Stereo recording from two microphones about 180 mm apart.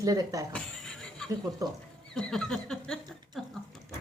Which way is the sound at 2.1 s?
5° left (ahead or behind).